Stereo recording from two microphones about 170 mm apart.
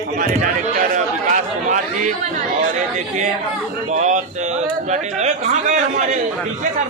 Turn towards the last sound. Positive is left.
turn(degrees=-45)  # may be behind; listen again after turning